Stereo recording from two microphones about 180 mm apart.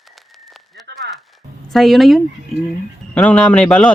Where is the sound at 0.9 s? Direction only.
70° right (ahead or behind).